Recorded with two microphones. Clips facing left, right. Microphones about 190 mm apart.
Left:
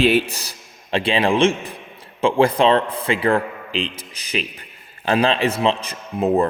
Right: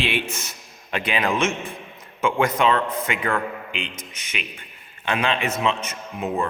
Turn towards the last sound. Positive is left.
turn(degrees=35)  # may be behind; listen again after turning